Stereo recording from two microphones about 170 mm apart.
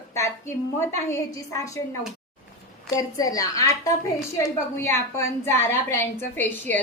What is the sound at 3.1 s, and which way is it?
A woman's voice, 20° left (ahead or behind).